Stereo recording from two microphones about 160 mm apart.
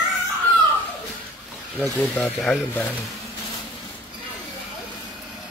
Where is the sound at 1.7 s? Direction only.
10° left (ahead or behind).